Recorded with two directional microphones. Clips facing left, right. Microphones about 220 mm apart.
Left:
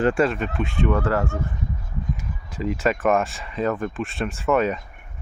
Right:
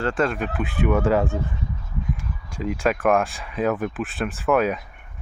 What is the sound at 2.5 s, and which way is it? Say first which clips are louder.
Speech: even; centre (ahead or behind).